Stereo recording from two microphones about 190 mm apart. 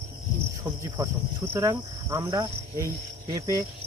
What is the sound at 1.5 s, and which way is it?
Cricket, 15° right (ahead or behind).